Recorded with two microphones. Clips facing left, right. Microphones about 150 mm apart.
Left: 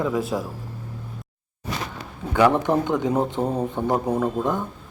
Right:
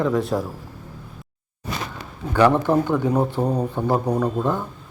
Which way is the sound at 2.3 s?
15° left (ahead or behind).